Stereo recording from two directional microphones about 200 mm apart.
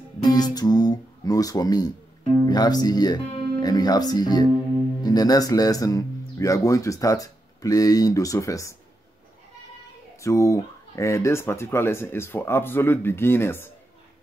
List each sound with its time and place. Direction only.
0.2 s speech: 20° left (ahead or behind)
10.2 s speech: 15° left (ahead or behind)